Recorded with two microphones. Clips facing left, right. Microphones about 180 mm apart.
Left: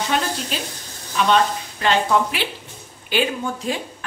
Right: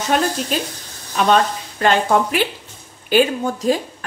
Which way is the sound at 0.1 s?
45° right (ahead or behind).